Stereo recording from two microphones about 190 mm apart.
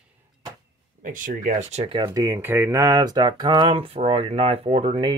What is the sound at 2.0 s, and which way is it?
Speech, 15° right (ahead or behind).